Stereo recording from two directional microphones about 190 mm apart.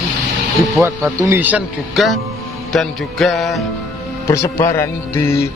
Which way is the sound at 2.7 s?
Centre (ahead or behind).